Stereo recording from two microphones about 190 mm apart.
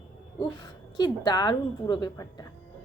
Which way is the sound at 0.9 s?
25° left (ahead or behind).